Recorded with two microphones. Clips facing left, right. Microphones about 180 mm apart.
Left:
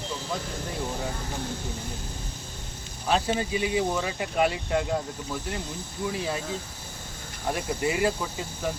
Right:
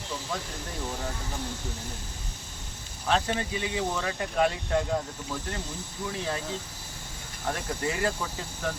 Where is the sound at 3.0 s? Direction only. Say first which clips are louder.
Left 2 dB; 10° left (ahead or behind).